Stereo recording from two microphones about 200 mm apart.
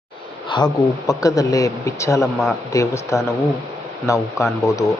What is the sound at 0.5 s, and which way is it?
Speech, 25° left (ahead or behind).